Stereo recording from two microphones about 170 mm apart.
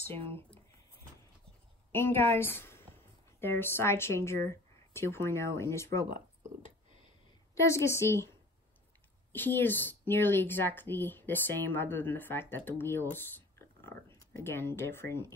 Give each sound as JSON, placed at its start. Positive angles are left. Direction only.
{"t": 1.9, "sound": "speech", "side_deg": 15}
{"t": 6.6, "sound": "a sound", "side_deg": 30}
{"t": 7.5, "sound": "a woman's voice", "side_deg": 15}